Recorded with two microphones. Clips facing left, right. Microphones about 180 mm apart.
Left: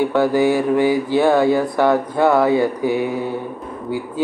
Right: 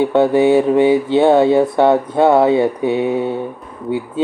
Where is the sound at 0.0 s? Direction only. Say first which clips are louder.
Right 3 dB; 25° right (ahead or behind).